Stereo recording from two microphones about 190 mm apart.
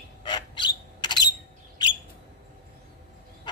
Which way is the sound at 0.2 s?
25° left (ahead or behind).